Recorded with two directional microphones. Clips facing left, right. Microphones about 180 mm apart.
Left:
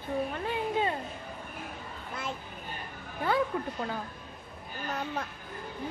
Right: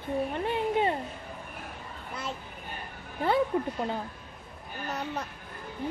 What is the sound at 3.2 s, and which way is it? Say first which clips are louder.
Speech: right 3 dB; 25° right (ahead or behind).